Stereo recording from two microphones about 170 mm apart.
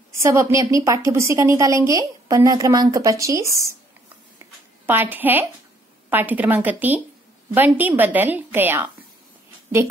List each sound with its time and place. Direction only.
0.2 s a woman's voice: 15° right (ahead or behind)
4.4 s a sound: 10° right (ahead or behind)
6.0 s a woman's voice: 10° right (ahead or behind)